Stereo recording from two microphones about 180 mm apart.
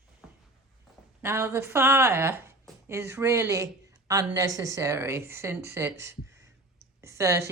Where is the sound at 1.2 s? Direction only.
15° right (ahead or behind).